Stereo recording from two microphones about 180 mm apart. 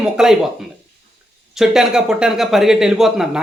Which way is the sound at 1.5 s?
5° right (ahead or behind).